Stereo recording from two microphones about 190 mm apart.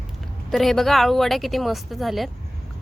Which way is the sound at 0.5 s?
Centre (ahead or behind).